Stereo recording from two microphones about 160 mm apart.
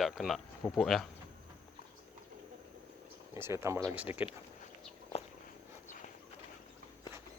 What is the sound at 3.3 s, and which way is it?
Speech, 15° right (ahead or behind).